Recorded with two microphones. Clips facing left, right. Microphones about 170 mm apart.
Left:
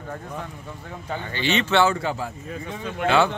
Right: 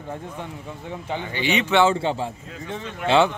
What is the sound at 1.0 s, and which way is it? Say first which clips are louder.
Speech: right 1 dB; 15° right (ahead or behind).